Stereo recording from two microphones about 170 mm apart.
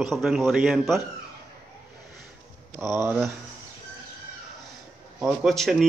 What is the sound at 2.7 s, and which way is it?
Speech, 15° right (ahead or behind).